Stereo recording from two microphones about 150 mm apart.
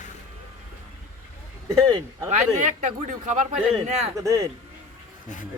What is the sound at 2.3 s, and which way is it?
Speech, 55° right (ahead or behind).